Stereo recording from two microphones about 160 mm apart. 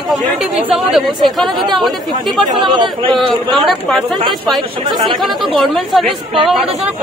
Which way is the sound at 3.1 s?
Centre (ahead or behind).